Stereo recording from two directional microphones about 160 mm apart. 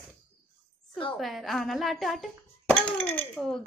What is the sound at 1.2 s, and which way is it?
Speech, centre (ahead or behind).